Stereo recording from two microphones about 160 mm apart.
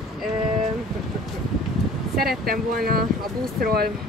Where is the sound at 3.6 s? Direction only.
70° right (ahead or behind).